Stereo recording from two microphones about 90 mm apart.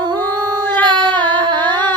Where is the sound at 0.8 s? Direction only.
60° right (ahead or behind).